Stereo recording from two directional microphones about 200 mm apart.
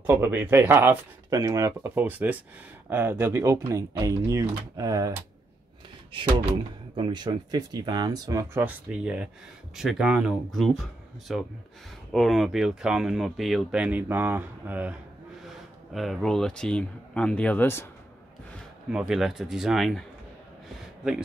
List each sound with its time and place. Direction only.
0.0 s speech: 10° right (ahead or behind)
7.0 s speech: 20° right (ahead or behind); by 17.8 s 10° left (ahead or behind)
18.9 s speech: 5° right (ahead or behind)